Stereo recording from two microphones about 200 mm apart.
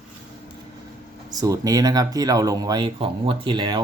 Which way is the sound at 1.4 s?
20° right (ahead or behind).